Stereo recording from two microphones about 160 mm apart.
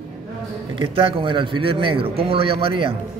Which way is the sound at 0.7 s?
35° right (ahead or behind).